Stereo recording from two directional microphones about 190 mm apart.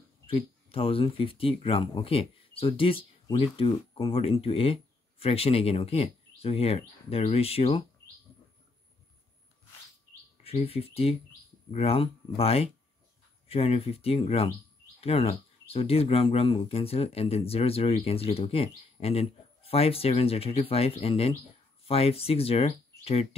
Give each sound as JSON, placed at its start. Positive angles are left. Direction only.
{"t": 0.3, "sound": "speech", "side_deg": 30}
{"t": 10.3, "sound": "speech", "side_deg": 30}